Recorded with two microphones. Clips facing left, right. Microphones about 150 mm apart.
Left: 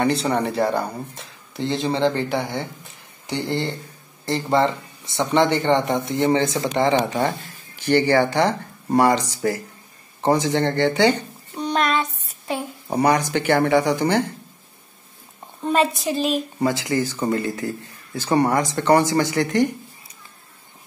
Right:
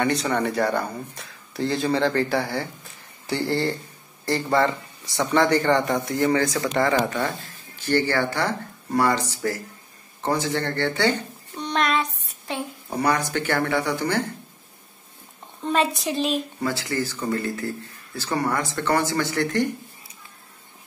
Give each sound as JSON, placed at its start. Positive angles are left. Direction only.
{"t": 0.0, "sound": "speech", "side_deg": 30}
{"t": 10.2, "sound": "a sound", "side_deg": 20}
{"t": 13.0, "sound": "speech", "side_deg": 15}
{"t": 15.6, "sound": "a woman's voice", "side_deg": 0}
{"t": 16.6, "sound": "speech", "side_deg": 15}